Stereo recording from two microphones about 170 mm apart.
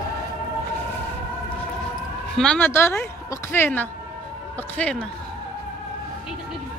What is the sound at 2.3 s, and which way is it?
Speech, 5° left (ahead or behind).